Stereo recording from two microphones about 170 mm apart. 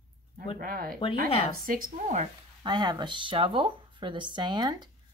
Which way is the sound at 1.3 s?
35° left (ahead or behind).